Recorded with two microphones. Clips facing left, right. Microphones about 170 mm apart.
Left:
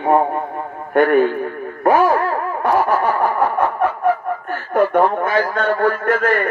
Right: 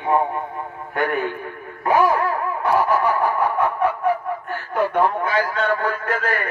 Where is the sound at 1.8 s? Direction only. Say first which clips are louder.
Left 3 dB; 45° left (ahead or behind).